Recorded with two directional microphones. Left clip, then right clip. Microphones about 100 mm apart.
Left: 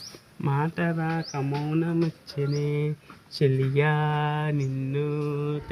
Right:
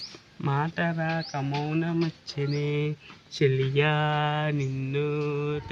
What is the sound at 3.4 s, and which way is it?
Speech, 5° right (ahead or behind).